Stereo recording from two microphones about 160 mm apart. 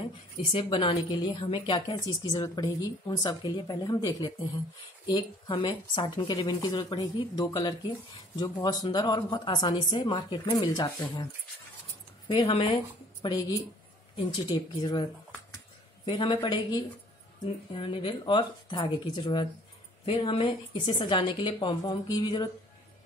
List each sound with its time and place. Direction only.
0.5 s a woman's voice: 35° left (ahead or behind)
12.3 s a woman's voice: 35° left (ahead or behind)
16.1 s a woman's voice: 30° left (ahead or behind)
17.7 s a woman's voice: 30° left (ahead or behind)